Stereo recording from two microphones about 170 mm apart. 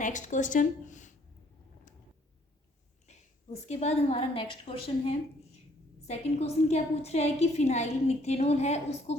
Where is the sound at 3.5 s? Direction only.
40° left (ahead or behind).